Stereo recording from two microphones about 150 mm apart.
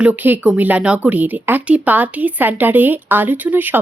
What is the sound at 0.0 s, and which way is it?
Speech, 10° right (ahead or behind).